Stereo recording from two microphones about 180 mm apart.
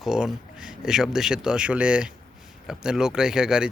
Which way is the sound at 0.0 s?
Centre (ahead or behind).